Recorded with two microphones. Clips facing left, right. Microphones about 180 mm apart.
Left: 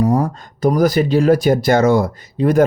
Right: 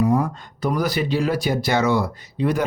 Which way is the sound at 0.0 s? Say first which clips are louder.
Left 3 dB; 40° left (ahead or behind).